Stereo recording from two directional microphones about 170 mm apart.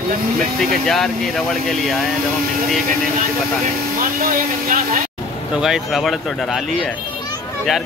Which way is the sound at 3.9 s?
55° right (ahead or behind).